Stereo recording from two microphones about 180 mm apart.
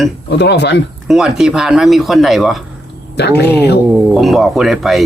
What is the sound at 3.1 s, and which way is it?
Speech, 65° left (ahead or behind).